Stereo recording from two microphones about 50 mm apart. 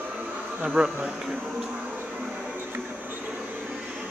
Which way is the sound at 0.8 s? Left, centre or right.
Right.